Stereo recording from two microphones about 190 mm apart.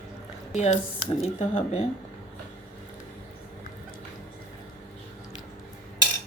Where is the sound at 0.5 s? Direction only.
35° left (ahead or behind).